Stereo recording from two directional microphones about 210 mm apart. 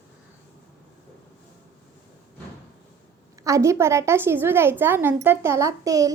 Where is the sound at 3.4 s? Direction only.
15° right (ahead or behind).